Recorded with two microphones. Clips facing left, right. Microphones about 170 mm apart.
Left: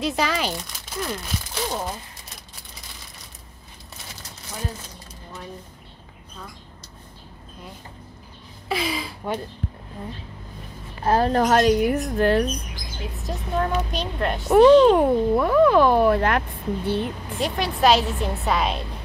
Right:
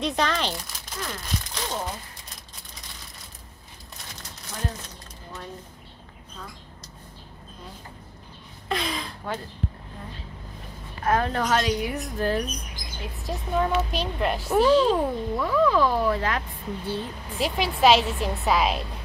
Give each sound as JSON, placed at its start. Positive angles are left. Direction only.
{"t": 0.0, "sound": "speech", "side_deg": 5}
{"t": 8.6, "sound": "a sound", "side_deg": 5}
{"t": 11.1, "sound": "a woman's voice", "side_deg": 35}
{"t": 13.0, "sound": "a woman's voice", "side_deg": 0}
{"t": 14.5, "sound": "a child's voice", "side_deg": 65}
{"t": 17.4, "sound": "a woman's voice", "side_deg": 0}